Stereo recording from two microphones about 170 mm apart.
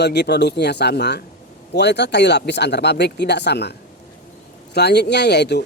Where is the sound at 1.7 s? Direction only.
90° left.